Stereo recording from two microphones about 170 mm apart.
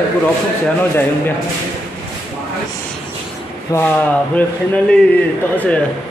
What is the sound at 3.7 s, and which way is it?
A man's voice, 15° left (ahead or behind).